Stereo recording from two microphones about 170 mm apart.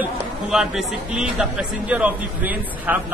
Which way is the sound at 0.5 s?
Centre (ahead or behind).